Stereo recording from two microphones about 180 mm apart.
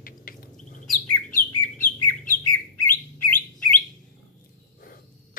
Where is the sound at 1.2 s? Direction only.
50° left (ahead or behind).